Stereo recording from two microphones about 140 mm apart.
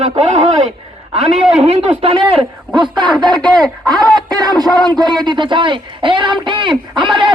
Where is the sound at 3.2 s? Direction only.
30° right (ahead or behind).